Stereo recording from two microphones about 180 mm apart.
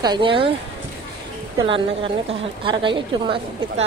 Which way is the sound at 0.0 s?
25° right (ahead or behind).